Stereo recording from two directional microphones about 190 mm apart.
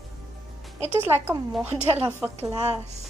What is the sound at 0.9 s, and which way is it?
A woman's voice, 10° right (ahead or behind).